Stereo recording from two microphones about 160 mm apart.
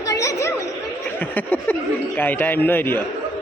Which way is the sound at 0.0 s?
20° left (ahead or behind).